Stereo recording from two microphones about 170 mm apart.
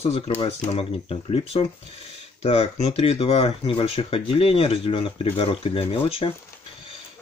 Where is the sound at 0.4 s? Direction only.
35° left (ahead or behind).